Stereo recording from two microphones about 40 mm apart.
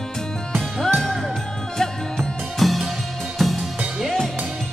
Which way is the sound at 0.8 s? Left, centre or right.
Centre.